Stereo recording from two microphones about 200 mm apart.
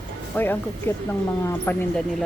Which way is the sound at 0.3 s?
10° left (ahead or behind).